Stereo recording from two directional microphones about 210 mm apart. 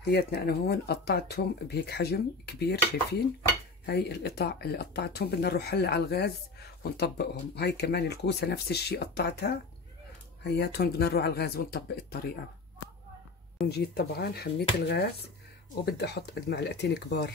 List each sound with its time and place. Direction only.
0.0 s speech: 50° left (ahead or behind)
13.7 s speech: 50° left (ahead or behind)